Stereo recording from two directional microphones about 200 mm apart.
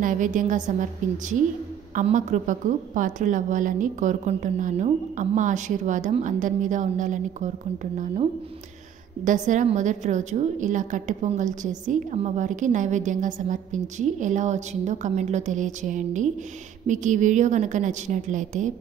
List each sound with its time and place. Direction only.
0.0 s a woman's voice: 40° right (ahead or behind)
2.0 s a woman's voice: 35° right (ahead or behind)